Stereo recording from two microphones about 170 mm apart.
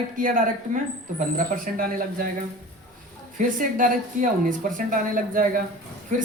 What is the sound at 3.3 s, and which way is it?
A woman's voice, 50° right (ahead or behind).